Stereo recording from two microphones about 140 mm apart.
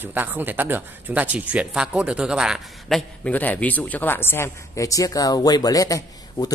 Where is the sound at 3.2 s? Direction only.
10° left (ahead or behind).